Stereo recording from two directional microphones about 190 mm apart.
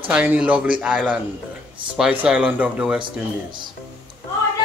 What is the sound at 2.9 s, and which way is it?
Speech, 25° right (ahead or behind).